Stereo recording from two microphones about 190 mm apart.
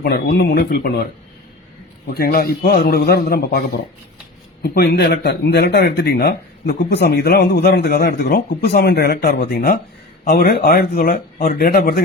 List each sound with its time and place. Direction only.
0.0 s speech: 55° left (ahead or behind)
2.0 s speech: 50° left (ahead or behind)
4.6 s speech: 55° left (ahead or behind)